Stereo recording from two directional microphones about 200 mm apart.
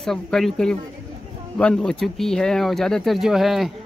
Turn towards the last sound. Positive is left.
turn(degrees=0)  # may be behind; listen again after turning